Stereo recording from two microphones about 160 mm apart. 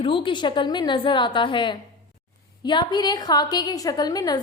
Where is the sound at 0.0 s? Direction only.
30° left (ahead or behind).